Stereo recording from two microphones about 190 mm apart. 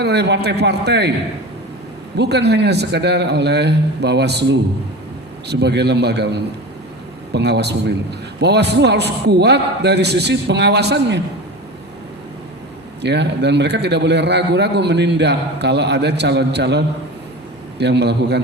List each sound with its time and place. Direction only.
0.0 s a man's voice: 60° right (ahead or behind)
2.1 s a man's voice: 60° right (ahead or behind)
13.0 s a man's voice: 65° right (ahead or behind)